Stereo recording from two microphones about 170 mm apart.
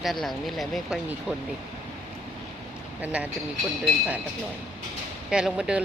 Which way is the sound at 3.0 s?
10° right (ahead or behind).